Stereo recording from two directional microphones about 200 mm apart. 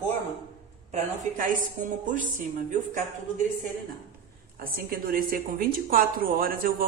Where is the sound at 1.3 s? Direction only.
40° right (ahead or behind).